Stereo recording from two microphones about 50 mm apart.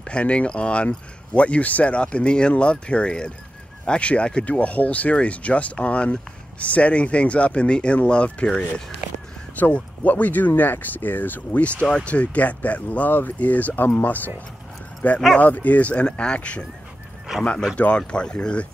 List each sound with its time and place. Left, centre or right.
0.0 s speech: left
11.6 s speech: left
15.3 s speech: left
16.1 s speech: centre
17.3 s horse: centre
17.7 s speech: left